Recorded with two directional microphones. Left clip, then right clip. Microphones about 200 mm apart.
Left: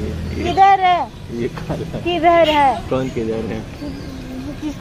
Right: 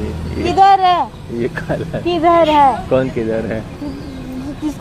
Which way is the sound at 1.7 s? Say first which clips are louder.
Right 5 dB; 15° right (ahead or behind).